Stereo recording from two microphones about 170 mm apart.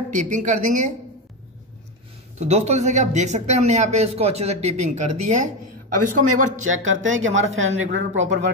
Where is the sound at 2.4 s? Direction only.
40° right (ahead or behind).